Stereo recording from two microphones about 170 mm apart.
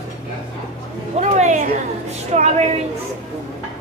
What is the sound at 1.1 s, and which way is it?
A woman's voice, 45° right (ahead or behind).